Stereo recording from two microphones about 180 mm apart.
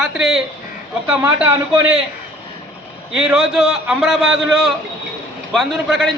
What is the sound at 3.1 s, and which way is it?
A man's voice, centre (ahead or behind).